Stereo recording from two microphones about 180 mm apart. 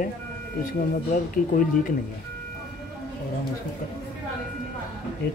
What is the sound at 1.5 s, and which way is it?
Speech, 50° left (ahead or behind).